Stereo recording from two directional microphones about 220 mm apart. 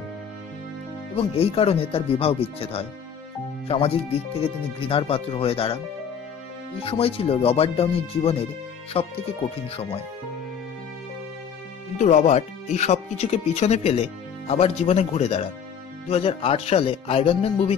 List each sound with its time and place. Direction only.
1.1 s speech: 25° left (ahead or behind)
6.8 s speech: 25° left (ahead or behind)
12.0 s speech: 30° left (ahead or behind)